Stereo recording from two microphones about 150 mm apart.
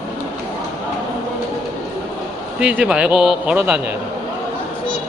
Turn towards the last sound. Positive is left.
turn(degrees=-10)  # may be behind; listen again after turning